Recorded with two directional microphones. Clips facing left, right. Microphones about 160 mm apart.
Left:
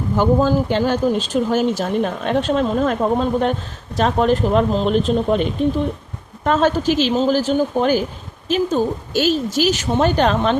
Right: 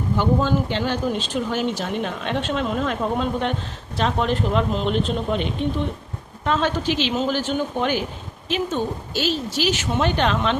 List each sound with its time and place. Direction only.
0.2 s speech: 40° left (ahead or behind)